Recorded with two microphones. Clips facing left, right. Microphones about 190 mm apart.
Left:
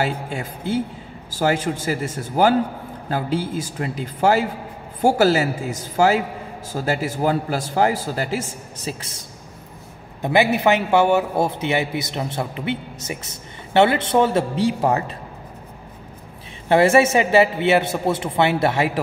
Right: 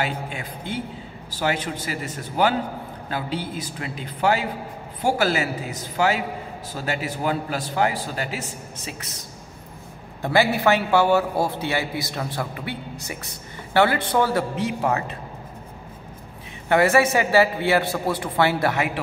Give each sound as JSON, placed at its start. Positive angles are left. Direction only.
{"t": 0.0, "sound": "a man's voice", "side_deg": 40}
{"t": 8.8, "sound": "a man's voice", "side_deg": 30}
{"t": 10.2, "sound": "a man's voice", "side_deg": 20}
{"t": 14.5, "sound": "a man's voice", "side_deg": 35}
{"t": 16.6, "sound": "a man's voice", "side_deg": 25}